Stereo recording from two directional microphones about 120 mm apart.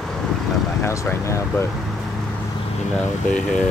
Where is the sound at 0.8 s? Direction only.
25° left (ahead or behind).